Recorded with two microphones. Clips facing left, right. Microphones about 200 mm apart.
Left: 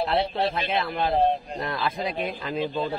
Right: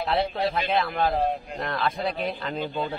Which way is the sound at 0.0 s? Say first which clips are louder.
Left 1 dB; centre (ahead or behind).